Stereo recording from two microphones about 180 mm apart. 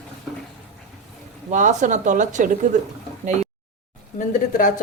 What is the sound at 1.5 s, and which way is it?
Speech, 45° right (ahead or behind).